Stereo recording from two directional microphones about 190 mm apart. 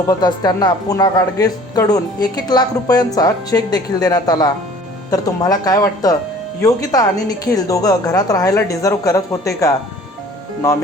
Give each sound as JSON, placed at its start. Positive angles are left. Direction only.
{"t": 0.1, "sound": "speech", "side_deg": 20}